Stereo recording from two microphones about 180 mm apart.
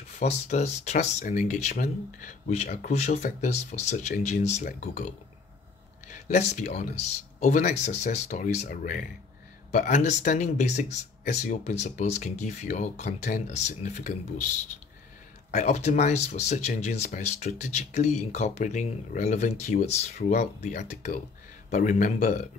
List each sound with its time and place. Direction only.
0.2 s speech: 40° left (ahead or behind)
15.5 s speech: 40° left (ahead or behind)